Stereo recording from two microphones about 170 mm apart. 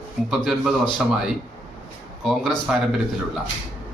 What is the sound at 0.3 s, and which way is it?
Speech, centre (ahead or behind).